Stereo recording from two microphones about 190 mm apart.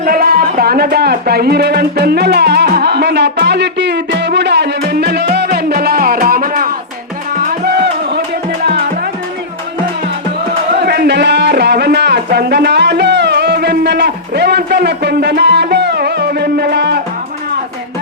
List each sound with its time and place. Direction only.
0.0 s speech: 50° right (ahead or behind)
7.4 s music: 60° right (ahead or behind)
10.8 s a sound: 55° right (ahead or behind)